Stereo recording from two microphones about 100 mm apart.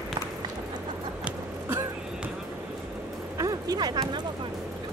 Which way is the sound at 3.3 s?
35° right (ahead or behind).